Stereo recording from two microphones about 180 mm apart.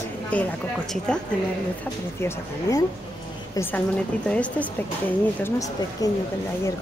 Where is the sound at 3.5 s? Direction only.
10° left (ahead or behind).